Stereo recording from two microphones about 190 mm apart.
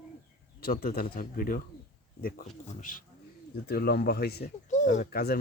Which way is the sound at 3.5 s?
55° left (ahead or behind).